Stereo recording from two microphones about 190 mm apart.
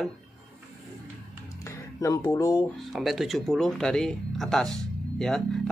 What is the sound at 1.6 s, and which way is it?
Speech, 15° left (ahead or behind).